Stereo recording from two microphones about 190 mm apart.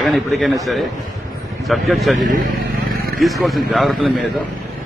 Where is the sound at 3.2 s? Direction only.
Centre (ahead or behind).